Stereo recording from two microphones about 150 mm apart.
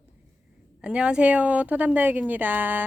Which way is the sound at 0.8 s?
5° right (ahead or behind).